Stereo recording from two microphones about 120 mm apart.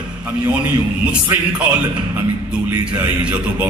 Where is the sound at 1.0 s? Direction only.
10° right (ahead or behind).